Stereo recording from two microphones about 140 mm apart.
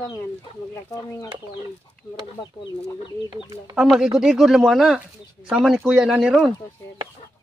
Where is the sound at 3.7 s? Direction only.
5° right (ahead or behind).